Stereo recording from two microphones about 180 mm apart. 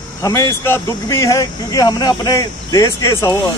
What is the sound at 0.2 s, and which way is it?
Speech, 15° left (ahead or behind).